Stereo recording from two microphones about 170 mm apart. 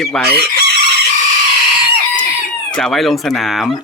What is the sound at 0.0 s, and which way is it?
Speech, centre (ahead or behind).